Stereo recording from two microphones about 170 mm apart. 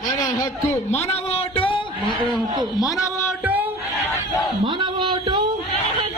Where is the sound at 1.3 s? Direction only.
30° left (ahead or behind).